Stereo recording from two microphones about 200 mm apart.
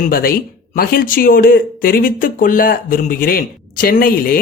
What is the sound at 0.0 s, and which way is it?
A man's voice, 45° left (ahead or behind).